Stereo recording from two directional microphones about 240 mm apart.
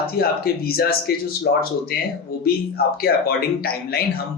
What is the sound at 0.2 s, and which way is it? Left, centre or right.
Speech, left.